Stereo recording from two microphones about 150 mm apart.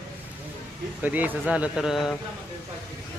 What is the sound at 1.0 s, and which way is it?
A man's voice, 10° right (ahead or behind).